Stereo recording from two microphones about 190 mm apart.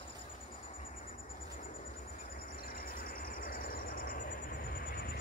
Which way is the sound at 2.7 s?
50° left (ahead or behind).